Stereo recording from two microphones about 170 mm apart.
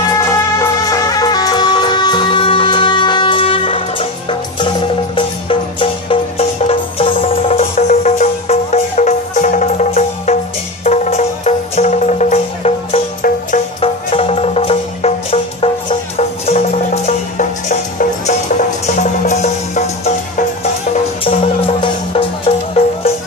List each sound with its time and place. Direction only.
0.2 s music: 15° left (ahead or behind); by 23.1 s 35° left (ahead or behind)